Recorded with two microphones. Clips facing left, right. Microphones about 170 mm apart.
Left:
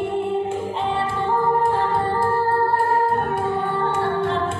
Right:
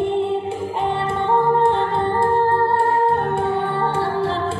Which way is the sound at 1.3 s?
20° right (ahead or behind).